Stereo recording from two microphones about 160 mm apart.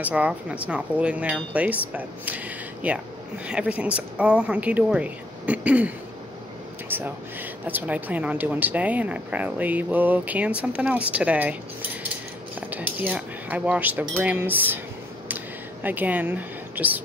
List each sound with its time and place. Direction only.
0.0 s speech: 10° right (ahead or behind)
12.5 s speech: 10° right (ahead or behind)
15.2 s a sound: 10° right (ahead or behind)